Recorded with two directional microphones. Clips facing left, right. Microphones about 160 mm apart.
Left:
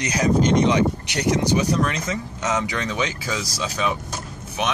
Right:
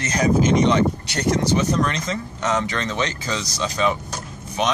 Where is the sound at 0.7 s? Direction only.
15° left (ahead or behind).